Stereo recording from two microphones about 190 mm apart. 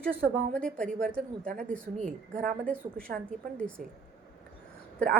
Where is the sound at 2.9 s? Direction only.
50° right (ahead or behind).